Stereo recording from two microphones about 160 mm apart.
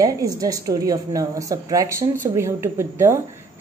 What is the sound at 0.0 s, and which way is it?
A woman's voice, 20° right (ahead or behind).